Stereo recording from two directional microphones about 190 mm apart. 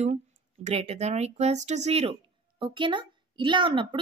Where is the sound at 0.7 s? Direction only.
35° right (ahead or behind).